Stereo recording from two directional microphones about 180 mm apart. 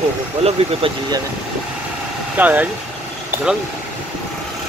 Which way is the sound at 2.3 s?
10° right (ahead or behind).